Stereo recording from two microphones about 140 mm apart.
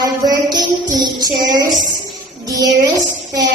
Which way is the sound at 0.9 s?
30° right (ahead or behind).